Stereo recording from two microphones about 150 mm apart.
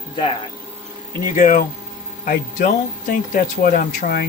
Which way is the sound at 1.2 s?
60° left (ahead or behind).